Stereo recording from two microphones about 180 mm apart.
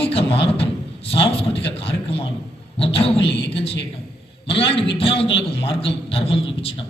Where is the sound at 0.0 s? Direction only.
30° left (ahead or behind).